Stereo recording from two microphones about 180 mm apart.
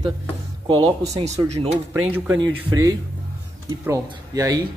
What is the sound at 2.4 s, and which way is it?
Speech, 20° right (ahead or behind).